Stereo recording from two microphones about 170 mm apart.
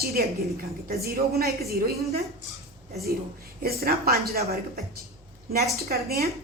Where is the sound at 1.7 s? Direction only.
65° right (ahead or behind).